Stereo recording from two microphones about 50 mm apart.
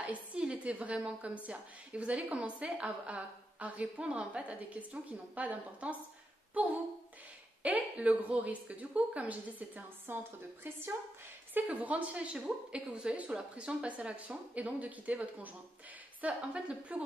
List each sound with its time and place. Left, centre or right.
0.0 s a woman's voice: right
11.8 s a woman's voice: right